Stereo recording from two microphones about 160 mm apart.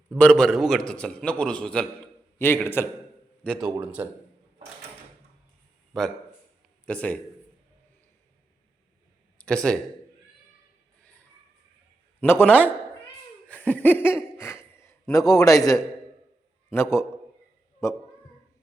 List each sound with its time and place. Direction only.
0.1 s a man's voice: 10° left (ahead or behind)
3.6 s a man's voice: 10° right (ahead or behind)
5.9 s a man's voice: centre (ahead or behind)
9.4 s speech: 5° left (ahead or behind)
12.2 s a man's voice: 10° left (ahead or behind)
13.5 s laughter: 10° left (ahead or behind)
14.6 s a sound: 15° left (ahead or behind)
15.3 s a man's voice: 20° left (ahead or behind)